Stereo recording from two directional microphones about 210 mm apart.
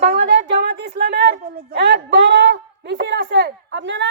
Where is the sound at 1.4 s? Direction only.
50° right (ahead or behind).